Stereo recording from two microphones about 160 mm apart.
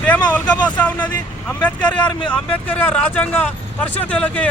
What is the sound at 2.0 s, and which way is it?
Speech, 30° left (ahead or behind).